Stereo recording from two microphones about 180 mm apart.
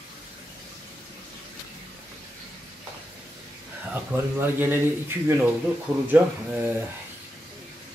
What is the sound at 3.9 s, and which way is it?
Speech, 10° right (ahead or behind).